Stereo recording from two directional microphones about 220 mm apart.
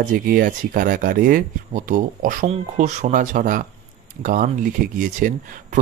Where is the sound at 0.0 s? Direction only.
40° right (ahead or behind).